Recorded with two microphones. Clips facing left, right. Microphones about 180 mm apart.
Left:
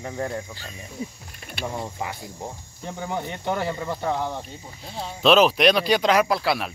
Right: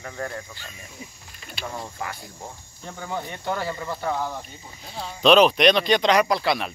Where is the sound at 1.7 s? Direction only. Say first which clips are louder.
Left 1 dB; 20° left (ahead or behind).